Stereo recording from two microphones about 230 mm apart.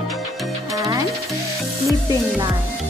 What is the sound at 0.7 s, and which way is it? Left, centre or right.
Music, centre.